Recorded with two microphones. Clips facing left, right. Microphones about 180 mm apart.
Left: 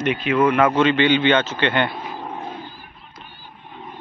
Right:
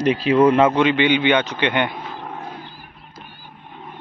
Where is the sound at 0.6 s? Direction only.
15° right (ahead or behind).